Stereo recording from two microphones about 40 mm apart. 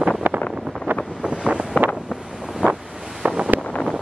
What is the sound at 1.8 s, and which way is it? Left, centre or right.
Wind noise, left.